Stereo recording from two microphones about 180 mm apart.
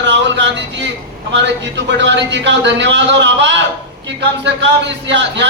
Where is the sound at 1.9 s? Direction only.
80° right.